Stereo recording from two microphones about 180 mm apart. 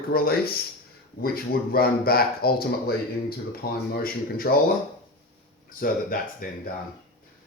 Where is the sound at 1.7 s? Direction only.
55° left (ahead or behind).